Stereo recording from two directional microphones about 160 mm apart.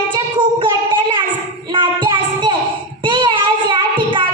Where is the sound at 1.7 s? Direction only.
30° right (ahead or behind).